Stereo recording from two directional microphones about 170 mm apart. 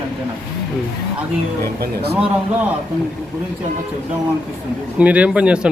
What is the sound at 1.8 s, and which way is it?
Speech, 70° right (ahead or behind).